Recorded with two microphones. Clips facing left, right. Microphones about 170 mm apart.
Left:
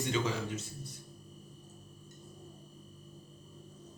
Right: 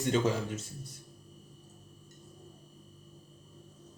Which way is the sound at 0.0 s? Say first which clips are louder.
Right 4 dB; 45° right (ahead or behind).